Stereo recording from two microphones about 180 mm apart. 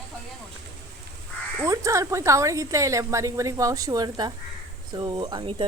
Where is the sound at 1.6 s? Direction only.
15° right (ahead or behind).